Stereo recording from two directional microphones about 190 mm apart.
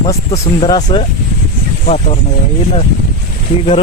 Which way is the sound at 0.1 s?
30° left (ahead or behind).